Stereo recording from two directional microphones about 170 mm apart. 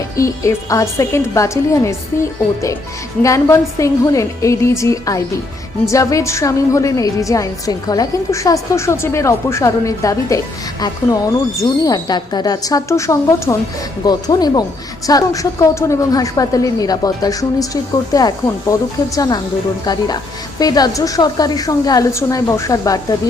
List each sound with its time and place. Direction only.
0.2 s a woman's voice: 20° left (ahead or behind)
3.2 s a woman's voice: 15° left (ahead or behind)